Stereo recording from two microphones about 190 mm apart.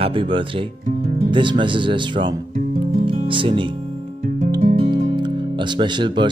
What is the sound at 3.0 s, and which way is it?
Music, 25° right (ahead or behind).